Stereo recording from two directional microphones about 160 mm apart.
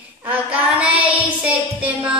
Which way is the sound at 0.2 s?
10° right (ahead or behind).